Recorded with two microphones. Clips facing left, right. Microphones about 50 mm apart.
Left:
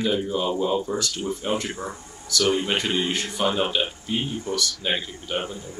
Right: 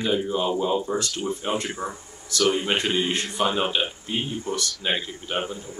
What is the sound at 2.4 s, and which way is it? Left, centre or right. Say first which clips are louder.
Speech: right 1 dB; centre.